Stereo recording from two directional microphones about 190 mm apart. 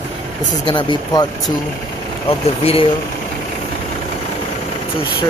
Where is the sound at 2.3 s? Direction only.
30° left (ahead or behind).